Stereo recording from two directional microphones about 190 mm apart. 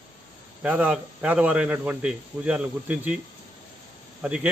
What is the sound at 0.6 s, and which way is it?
A man's voice, 10° right (ahead or behind).